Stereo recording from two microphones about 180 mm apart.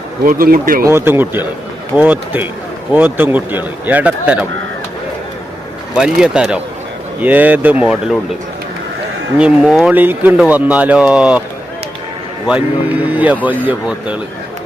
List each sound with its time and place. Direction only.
0.3 s speech: 55° right (ahead or behind)
0.9 s speech: 15° right (ahead or behind)
5.9 s speech: 5° right (ahead or behind)
9.4 s speech: 5° right (ahead or behind)
12.5 s speech: 10° right (ahead or behind)